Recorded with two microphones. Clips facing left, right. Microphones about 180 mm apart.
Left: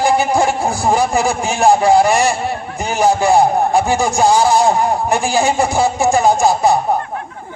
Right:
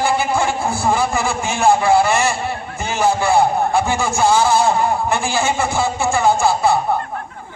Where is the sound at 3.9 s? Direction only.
15° left (ahead or behind).